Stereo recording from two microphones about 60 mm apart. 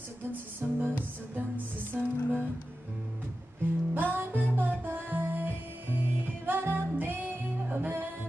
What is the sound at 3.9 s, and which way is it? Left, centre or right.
Music, right.